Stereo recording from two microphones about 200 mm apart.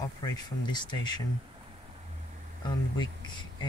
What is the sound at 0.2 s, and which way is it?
Speech, 20° left (ahead or behind).